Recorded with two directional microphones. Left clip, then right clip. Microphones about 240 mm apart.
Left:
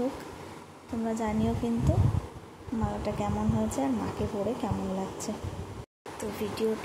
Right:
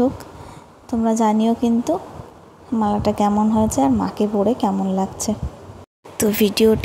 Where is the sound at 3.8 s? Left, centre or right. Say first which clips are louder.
Right 12 dB; right.